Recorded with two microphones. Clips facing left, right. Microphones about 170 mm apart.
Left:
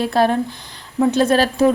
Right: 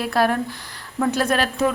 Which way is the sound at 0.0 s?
25° left (ahead or behind).